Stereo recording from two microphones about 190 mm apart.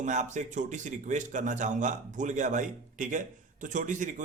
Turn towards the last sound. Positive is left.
turn(degrees=-40)  # may be behind; listen again after turning